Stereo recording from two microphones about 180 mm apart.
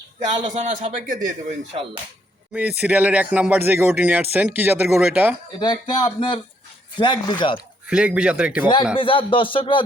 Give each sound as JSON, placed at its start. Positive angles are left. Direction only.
{"t": 0.4, "sound": "a man's voice", "side_deg": -40}
{"t": 2.5, "sound": "speech", "side_deg": -10}
{"t": 5.5, "sound": "speech", "side_deg": 25}
{"t": 7.9, "sound": "speech", "side_deg": -5}
{"t": 8.6, "sound": "speech", "side_deg": 25}